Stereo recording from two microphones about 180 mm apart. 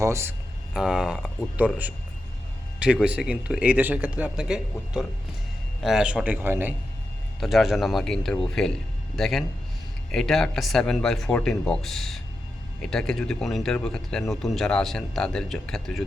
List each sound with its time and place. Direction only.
0.0 s speech: 15° right (ahead or behind)
0.7 s a man's voice: 5° right (ahead or behind)
7.3 s speech: centre (ahead or behind)